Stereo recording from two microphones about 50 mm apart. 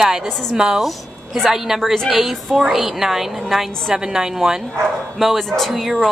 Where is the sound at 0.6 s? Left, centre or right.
Centre.